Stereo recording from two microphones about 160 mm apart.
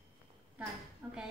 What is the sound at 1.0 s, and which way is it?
Dishes, 10° right (ahead or behind).